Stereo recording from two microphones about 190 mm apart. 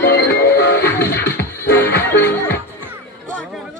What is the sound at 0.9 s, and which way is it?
Music, 15° left (ahead or behind).